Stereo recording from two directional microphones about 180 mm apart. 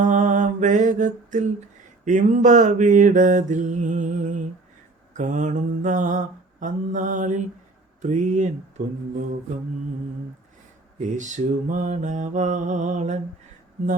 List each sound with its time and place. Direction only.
0.0 s mantra: 45° right (ahead or behind)
11.2 s mantra: 45° right (ahead or behind)